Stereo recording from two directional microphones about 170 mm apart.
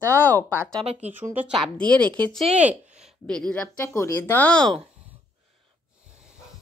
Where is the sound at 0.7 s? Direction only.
35° right (ahead or behind).